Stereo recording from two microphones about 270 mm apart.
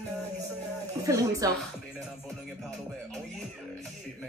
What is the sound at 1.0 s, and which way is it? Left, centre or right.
Speech, centre.